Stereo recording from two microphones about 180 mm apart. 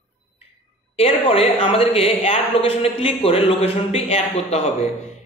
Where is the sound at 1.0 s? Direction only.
30° left (ahead or behind).